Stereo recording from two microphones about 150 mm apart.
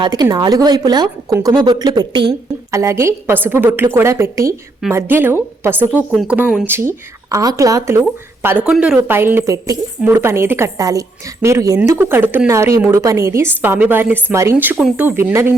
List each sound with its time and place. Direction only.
0.0 s speech: 25° right (ahead or behind)
2.7 s a woman's voice: 20° right (ahead or behind)
14.8 s speech: centre (ahead or behind)
15.0 s a woman's voice: 15° right (ahead or behind)